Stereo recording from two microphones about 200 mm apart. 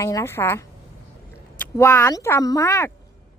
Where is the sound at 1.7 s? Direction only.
10° left (ahead or behind).